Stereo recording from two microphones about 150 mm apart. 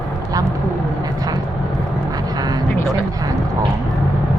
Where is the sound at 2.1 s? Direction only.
25° right (ahead or behind).